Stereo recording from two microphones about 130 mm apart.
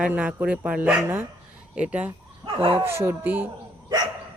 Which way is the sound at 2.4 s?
45° right (ahead or behind).